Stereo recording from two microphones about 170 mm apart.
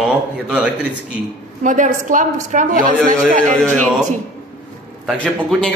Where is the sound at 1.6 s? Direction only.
50° right (ahead or behind).